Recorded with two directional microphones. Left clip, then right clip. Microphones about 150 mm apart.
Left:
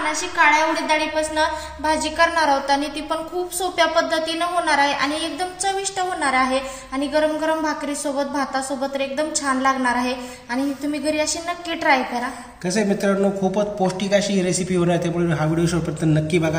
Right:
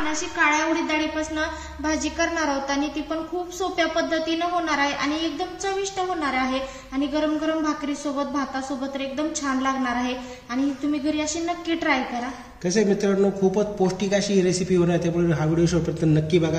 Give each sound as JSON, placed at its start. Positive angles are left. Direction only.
{"t": 0.0, "sound": "a woman's voice", "side_deg": 50}
{"t": 12.6, "sound": "a man's voice", "side_deg": 0}